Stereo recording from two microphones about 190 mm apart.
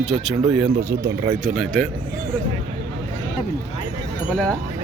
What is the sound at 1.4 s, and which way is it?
Speech, centre (ahead or behind).